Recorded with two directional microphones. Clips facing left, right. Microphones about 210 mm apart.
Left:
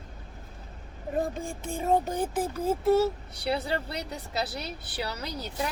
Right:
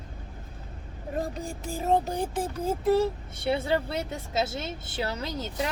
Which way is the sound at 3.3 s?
25° right (ahead or behind).